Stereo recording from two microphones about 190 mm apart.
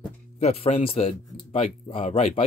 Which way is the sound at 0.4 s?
35° left (ahead or behind).